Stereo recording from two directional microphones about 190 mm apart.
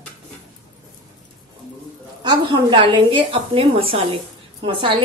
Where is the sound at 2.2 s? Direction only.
25° right (ahead or behind).